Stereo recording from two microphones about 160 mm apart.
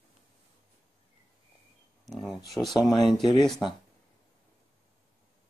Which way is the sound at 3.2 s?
30° left (ahead or behind).